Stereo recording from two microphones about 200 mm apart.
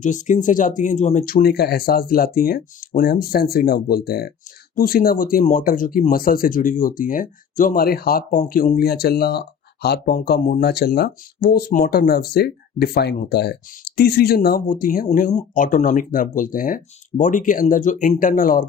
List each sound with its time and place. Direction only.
0.0 s speech: 40° left (ahead or behind)